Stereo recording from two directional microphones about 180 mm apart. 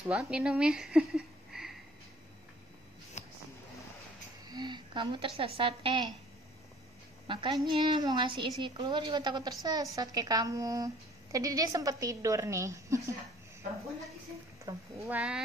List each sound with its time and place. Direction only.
0.0 s speech: 5° right (ahead or behind)
3.2 s a sound: 40° left (ahead or behind)
4.5 s a woman's voice: 25° right (ahead or behind)
7.2 s a woman's voice: 25° right (ahead or behind)
14.6 s a woman's voice: 15° right (ahead or behind)